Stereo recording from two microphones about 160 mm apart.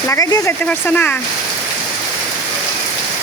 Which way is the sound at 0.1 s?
20° left (ahead or behind).